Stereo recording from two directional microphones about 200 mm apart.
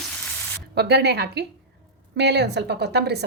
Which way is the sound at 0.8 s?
55° right (ahead or behind).